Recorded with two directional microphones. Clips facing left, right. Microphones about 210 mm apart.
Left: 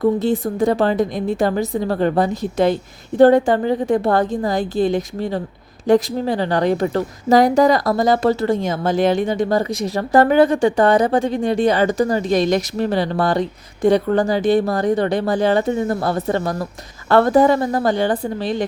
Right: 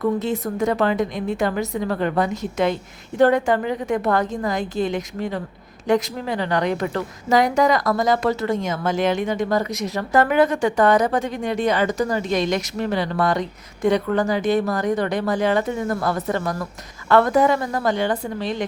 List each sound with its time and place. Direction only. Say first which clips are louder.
0.0 s a woman's voice: left 5 dB; 30° left (ahead or behind)